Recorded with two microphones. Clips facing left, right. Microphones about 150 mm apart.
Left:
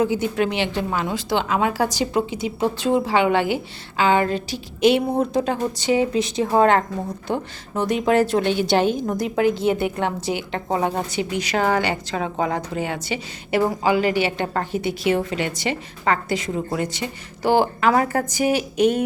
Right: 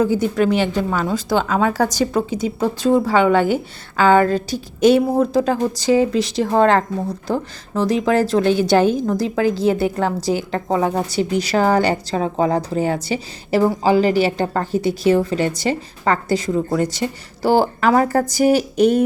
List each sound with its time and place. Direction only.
0.0 s a woman's voice: 40° right (ahead or behind)